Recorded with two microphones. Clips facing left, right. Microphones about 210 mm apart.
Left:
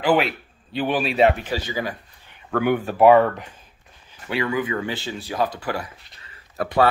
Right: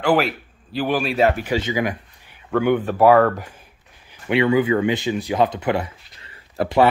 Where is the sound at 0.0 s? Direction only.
Centre (ahead or behind).